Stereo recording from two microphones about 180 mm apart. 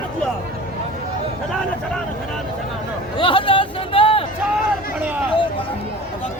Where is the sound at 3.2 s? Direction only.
30° left (ahead or behind).